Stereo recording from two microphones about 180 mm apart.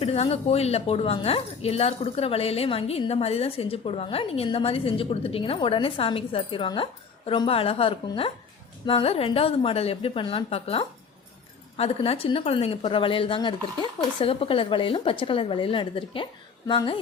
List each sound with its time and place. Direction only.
0.0 s a woman's voice: 35° left (ahead or behind)